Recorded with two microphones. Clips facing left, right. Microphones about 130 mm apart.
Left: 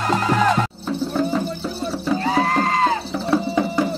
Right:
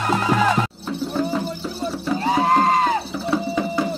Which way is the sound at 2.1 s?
20° right (ahead or behind).